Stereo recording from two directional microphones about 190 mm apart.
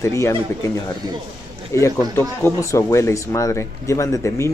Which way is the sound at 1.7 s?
15° left (ahead or behind).